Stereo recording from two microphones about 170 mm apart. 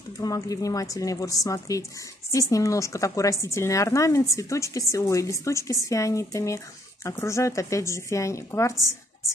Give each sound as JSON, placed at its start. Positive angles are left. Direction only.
{"t": 0.2, "sound": "a woman's voice", "side_deg": 20}